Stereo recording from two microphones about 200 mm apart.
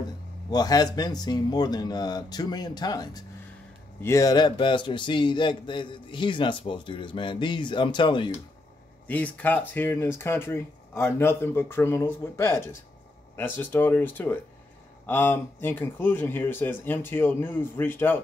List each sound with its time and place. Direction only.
0.5 s a man's voice: 20° left (ahead or behind)
9.0 s speech: 10° left (ahead or behind)